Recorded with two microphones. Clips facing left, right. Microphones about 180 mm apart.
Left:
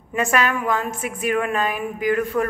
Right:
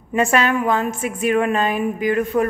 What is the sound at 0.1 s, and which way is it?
A woman's voice, 25° right (ahead or behind).